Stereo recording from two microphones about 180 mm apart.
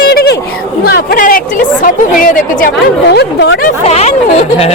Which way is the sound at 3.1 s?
70° left (ahead or behind).